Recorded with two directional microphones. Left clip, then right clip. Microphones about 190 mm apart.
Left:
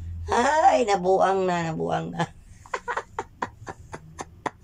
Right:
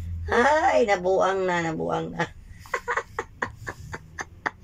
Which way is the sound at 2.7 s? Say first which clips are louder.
Right 2 dB; 10° left (ahead or behind).